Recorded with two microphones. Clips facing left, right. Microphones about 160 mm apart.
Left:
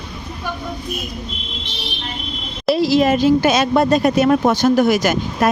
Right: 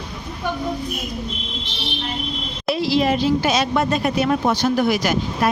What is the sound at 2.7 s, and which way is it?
Speech, 45° left (ahead or behind).